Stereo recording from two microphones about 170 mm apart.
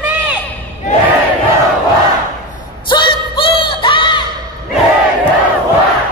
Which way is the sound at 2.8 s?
30° left (ahead or behind).